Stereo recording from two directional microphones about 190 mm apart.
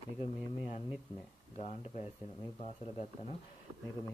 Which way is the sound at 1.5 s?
35° left (ahead or behind).